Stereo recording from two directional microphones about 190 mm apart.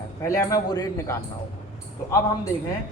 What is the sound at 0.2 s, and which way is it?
A man's voice, 15° left (ahead or behind).